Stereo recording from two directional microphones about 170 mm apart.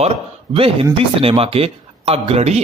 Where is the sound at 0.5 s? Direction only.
35° right (ahead or behind).